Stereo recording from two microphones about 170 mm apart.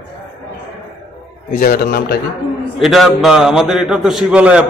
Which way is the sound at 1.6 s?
60° left (ahead or behind).